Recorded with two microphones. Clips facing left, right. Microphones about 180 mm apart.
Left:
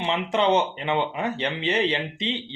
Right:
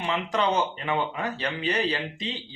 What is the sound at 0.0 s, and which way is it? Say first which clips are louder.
Speech: left 3 dB; 25° left (ahead or behind).